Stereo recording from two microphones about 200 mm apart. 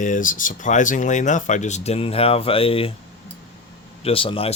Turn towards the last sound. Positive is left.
turn(degrees=30)  # may be behind; listen again after turning